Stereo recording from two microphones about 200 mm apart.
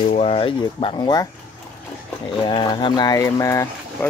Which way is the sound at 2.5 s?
25° left (ahead or behind).